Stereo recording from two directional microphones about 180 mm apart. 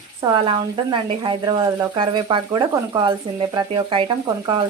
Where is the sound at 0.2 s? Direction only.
25° right (ahead or behind).